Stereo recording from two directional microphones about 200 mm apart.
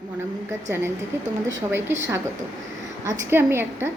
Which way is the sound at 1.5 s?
15° right (ahead or behind).